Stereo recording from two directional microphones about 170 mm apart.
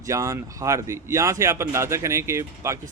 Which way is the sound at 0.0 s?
20° right (ahead or behind).